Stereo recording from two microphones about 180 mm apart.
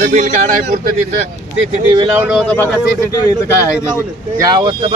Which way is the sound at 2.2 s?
5° right (ahead or behind).